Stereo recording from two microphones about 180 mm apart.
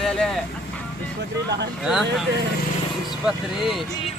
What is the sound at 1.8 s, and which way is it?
Speech, centre (ahead or behind).